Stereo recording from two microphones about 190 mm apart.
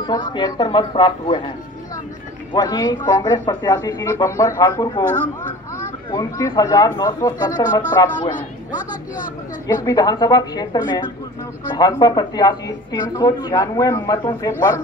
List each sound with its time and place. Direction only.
0.0 s a woman's voice: 25° left (ahead or behind)
2.5 s a woman's voice: 20° left (ahead or behind)
6.1 s a woman's voice: 20° left (ahead or behind)
9.7 s a woman's voice: 20° left (ahead or behind)